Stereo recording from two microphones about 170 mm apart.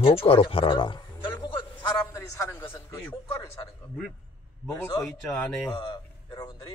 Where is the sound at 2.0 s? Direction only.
15° left (ahead or behind).